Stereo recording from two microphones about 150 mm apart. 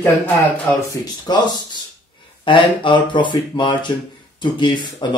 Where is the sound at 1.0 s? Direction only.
30° left (ahead or behind).